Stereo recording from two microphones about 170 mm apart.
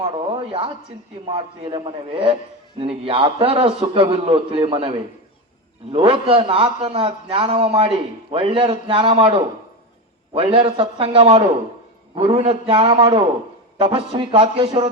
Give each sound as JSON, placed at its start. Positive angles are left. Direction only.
{"t": 0.0, "sound": "a man's voice", "side_deg": -35}